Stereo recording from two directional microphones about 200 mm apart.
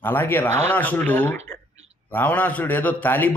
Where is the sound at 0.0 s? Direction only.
10° left (ahead or behind).